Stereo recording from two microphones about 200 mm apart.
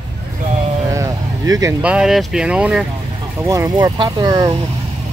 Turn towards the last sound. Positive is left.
turn(degrees=-20)  # may be behind; listen again after turning